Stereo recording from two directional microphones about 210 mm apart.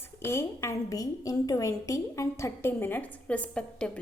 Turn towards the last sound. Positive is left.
turn(degrees=5)  # may be behind; listen again after turning